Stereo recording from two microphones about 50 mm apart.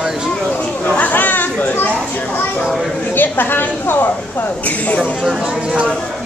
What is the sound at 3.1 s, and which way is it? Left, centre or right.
Speech, left.